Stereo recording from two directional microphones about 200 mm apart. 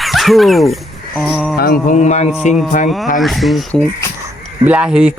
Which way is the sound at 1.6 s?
45° left (ahead or behind).